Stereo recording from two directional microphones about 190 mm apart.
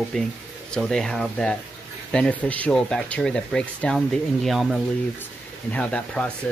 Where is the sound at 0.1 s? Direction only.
Centre (ahead or behind).